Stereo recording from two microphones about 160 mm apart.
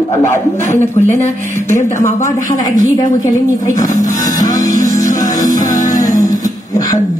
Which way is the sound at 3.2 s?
55° left (ahead or behind).